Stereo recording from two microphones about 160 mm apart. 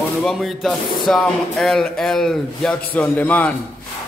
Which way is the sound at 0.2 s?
Centre (ahead or behind).